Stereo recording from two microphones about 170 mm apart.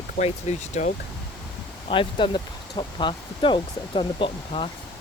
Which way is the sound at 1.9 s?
30° left (ahead or behind).